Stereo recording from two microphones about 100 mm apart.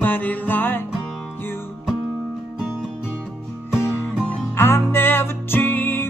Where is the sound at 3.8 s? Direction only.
25° left (ahead or behind).